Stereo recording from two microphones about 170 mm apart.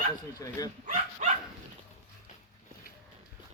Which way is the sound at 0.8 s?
45° right (ahead or behind).